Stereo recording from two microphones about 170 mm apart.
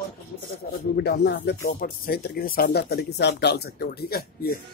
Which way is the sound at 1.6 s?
60° left (ahead or behind).